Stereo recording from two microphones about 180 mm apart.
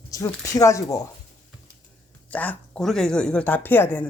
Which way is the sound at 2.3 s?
10° left (ahead or behind).